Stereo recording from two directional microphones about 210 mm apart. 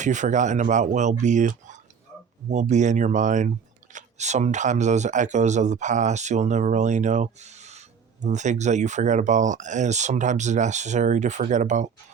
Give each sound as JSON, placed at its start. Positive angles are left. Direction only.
{"t": 0.0, "sound": "speech", "side_deg": -35}